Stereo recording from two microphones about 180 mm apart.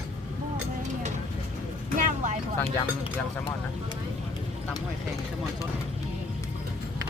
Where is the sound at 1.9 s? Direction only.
45° right (ahead or behind).